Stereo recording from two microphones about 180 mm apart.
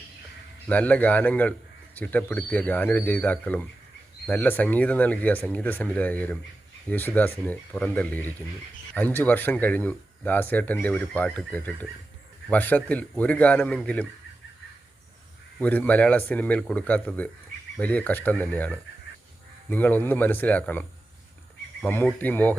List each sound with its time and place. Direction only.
0.7 s speech: 10° left (ahead or behind)
15.6 s speech: 10° left (ahead or behind)